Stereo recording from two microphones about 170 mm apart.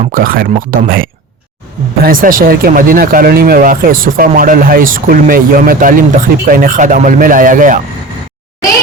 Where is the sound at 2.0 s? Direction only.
55° right (ahead or behind).